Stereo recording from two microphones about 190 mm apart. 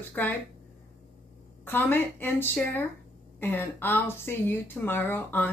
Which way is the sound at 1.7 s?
10° left (ahead or behind).